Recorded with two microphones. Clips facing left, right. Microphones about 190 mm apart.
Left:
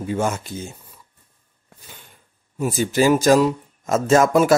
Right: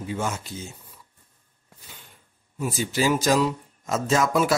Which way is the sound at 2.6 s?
50° left (ahead or behind).